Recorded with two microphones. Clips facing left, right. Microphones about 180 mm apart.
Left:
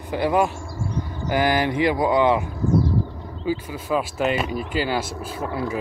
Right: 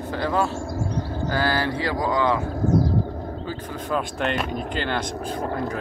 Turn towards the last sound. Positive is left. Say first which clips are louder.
# left 2 dB
turn(degrees=5)  # may be behind; listen again after turning